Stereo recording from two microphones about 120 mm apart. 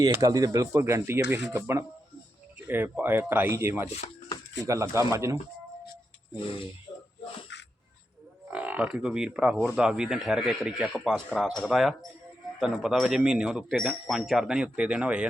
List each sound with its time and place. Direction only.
0.0 s speech: 30° right (ahead or behind)
8.4 s speech: 15° right (ahead or behind)
11.3 s speech: 5° left (ahead or behind); by 15.3 s 10° right (ahead or behind)